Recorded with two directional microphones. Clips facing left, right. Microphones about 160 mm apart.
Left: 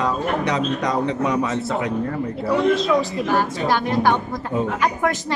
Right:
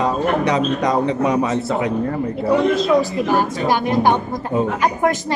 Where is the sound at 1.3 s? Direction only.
20° right (ahead or behind).